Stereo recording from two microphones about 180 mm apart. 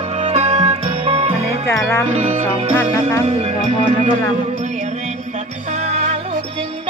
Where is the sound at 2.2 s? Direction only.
35° right (ahead or behind).